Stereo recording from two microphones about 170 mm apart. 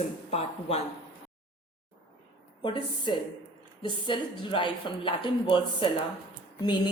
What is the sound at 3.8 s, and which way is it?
A woman's voice, 30° left (ahead or behind).